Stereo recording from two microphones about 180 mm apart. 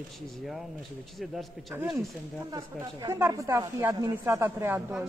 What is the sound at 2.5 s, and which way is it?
Speech, 15° right (ahead or behind).